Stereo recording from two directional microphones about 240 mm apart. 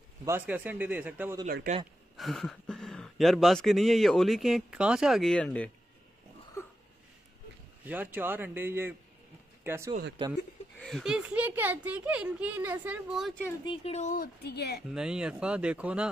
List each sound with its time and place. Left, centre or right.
0.2 s speech: centre
1.4 s speech: right
2.1 s speech: centre
7.8 s speech: centre
9.6 s a sound: centre
10.2 s speech: right
10.8 s speech: centre
13.7 s speech: left
14.9 s speech: centre